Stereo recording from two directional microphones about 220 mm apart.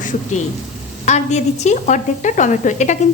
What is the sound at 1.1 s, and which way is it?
A woman's voice, 30° left (ahead or behind).